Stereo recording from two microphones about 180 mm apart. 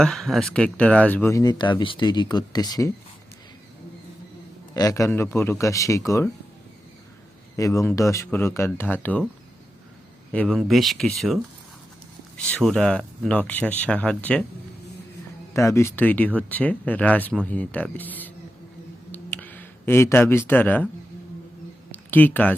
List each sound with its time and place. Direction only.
0.0 s speech: centre (ahead or behind); by 2.9 s 20° left (ahead or behind)
4.7 s speech: 20° left (ahead or behind)
7.5 s speech: 15° left (ahead or behind)
10.3 s speech: 5° left (ahead or behind)
12.4 s speech: 5° left (ahead or behind)
15.5 s speech: 15° left (ahead or behind)
19.1 s a sound: 10° left (ahead or behind)
21.9 s speech: 10° left (ahead or behind)